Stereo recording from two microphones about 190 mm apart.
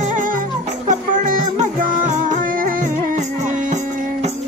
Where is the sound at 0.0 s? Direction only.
40° right (ahead or behind).